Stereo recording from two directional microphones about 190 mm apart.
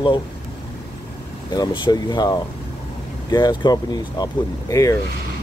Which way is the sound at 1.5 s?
20° left (ahead or behind).